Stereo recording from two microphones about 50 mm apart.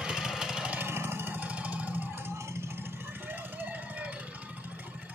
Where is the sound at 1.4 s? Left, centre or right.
Right.